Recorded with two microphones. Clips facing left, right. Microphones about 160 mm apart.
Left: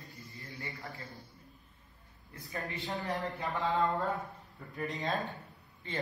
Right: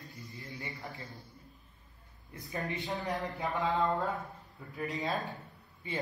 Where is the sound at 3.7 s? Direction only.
Centre (ahead or behind).